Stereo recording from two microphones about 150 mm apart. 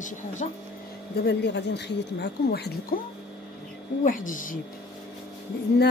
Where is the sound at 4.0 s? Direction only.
60° left (ahead or behind).